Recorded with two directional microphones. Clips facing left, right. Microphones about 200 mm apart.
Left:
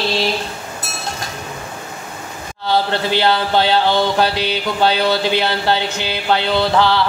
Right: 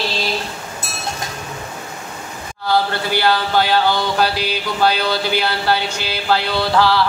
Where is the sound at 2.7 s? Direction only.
25° left (ahead or behind).